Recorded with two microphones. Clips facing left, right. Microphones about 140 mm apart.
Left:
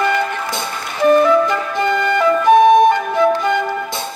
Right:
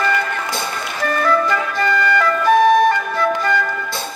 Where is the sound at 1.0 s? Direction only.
20° left (ahead or behind).